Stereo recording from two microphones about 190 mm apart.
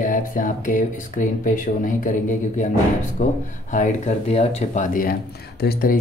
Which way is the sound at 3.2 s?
40° left (ahead or behind).